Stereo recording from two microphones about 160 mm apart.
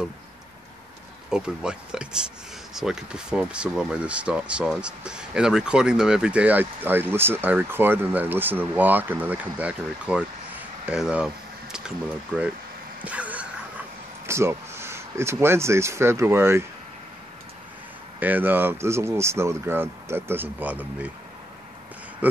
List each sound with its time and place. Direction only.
1.3 s speech: 5° right (ahead or behind)
10.9 s a sound: 5° right (ahead or behind)
13.0 s a sound: 10° right (ahead or behind)
15.3 s speech: 15° right (ahead or behind)
18.2 s speech: 10° right (ahead or behind)
22.2 s speech: 10° right (ahead or behind)